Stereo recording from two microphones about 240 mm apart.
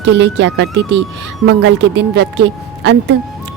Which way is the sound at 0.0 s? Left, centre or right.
Right.